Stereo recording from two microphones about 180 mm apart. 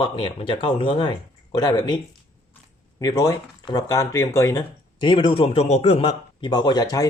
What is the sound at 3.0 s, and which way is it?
Speech, 20° left (ahead or behind).